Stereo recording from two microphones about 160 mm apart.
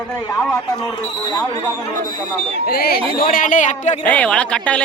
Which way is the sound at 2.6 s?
70° left (ahead or behind).